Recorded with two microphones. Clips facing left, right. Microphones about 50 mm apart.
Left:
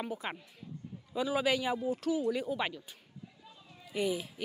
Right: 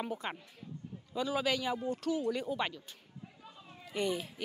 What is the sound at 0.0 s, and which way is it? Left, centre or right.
A woman's voice, centre.